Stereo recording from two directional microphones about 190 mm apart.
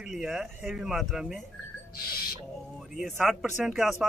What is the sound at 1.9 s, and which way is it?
Owl, 50° left (ahead or behind).